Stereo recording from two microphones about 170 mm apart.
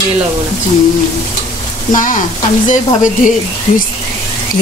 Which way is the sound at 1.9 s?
50° left (ahead or behind).